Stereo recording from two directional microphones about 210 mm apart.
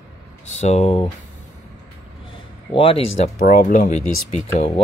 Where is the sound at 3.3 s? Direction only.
40° left (ahead or behind).